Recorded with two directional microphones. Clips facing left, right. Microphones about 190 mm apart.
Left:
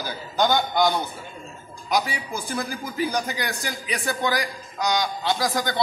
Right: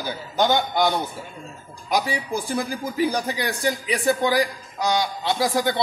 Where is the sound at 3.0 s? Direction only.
30° right (ahead or behind).